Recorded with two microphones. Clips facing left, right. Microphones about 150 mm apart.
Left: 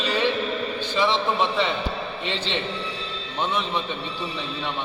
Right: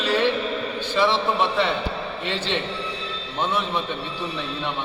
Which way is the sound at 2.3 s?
15° left (ahead or behind).